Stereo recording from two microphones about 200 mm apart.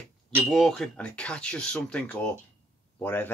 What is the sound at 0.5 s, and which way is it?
Speech, centre (ahead or behind).